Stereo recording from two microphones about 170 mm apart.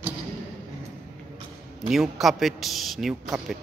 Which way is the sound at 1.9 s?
Centre (ahead or behind).